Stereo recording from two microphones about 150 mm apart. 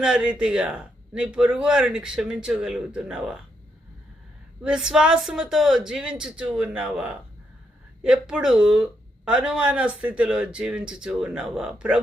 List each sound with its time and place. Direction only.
0.0 s speech: 5° right (ahead or behind)
4.6 s speech: 5° right (ahead or behind)